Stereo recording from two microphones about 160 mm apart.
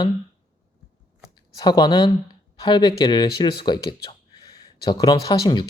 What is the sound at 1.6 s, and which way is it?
Speech, 25° left (ahead or behind).